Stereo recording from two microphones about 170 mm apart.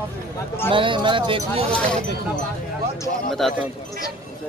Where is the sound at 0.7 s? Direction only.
30° right (ahead or behind).